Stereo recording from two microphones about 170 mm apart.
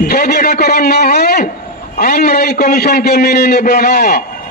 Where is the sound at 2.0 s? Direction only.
60° left (ahead or behind).